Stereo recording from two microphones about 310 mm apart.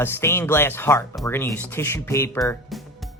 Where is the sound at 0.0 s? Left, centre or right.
Centre.